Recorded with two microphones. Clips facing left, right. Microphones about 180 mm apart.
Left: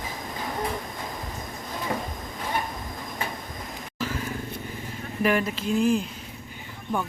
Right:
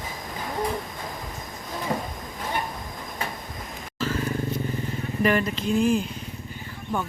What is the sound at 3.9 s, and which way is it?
Vehicle, 15° left (ahead or behind).